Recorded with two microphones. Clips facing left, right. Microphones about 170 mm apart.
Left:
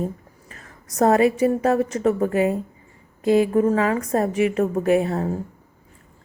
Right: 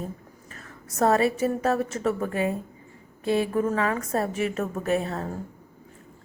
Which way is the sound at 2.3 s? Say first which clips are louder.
Left 6 dB; 20° left (ahead or behind).